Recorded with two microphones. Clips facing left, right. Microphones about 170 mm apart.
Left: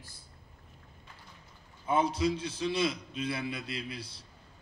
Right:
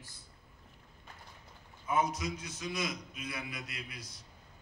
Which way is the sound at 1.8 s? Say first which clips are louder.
Left 4 dB; 30° left (ahead or behind).